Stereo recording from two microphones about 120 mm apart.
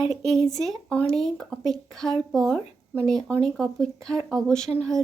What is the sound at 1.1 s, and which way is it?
Speech, centre (ahead or behind).